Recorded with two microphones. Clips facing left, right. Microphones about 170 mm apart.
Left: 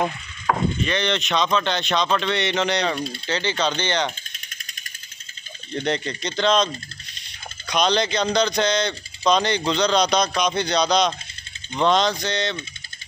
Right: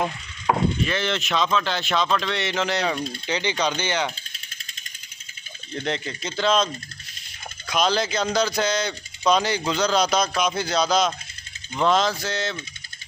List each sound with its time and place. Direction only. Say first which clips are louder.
0.5 s chop: right 1 dB; 20° right (ahead or behind)
0.8 s speech: left 2 dB; 5° right (ahead or behind)
5.9 s speech: left 3 dB; centre (ahead or behind)